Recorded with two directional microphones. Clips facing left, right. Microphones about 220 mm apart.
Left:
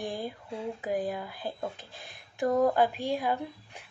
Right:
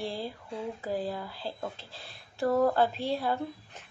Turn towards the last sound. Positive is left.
turn(degrees=15)  # may be behind; listen again after turning